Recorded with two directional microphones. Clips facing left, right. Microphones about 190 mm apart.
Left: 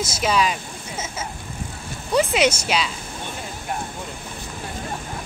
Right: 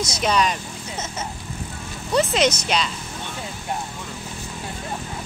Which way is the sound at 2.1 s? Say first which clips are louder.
Left 1 dB; 10° left (ahead or behind).